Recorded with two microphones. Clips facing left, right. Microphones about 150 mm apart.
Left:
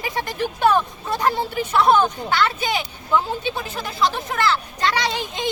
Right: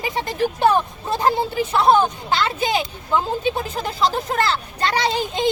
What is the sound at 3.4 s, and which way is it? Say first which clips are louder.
A child's voice: right 4 dB; 35° right (ahead or behind).